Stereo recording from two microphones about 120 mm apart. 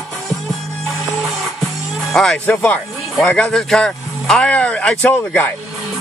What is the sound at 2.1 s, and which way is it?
Speech, 5° left (ahead or behind).